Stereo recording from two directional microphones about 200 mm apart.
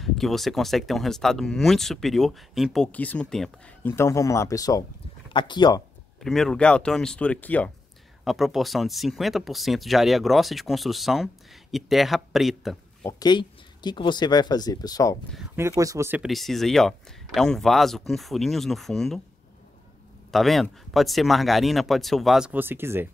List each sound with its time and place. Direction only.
0.0 s speech: centre (ahead or behind); by 5.8 s 20° left (ahead or behind)
6.2 s speech: centre (ahead or behind)
13.2 s speech: 20° left (ahead or behind)
15.5 s speech: 15° right (ahead or behind); by 19.2 s centre (ahead or behind)
20.2 s speech: centre (ahead or behind)